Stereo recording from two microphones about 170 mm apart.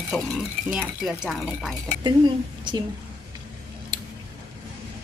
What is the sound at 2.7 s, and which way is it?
Speech, 25° right (ahead or behind).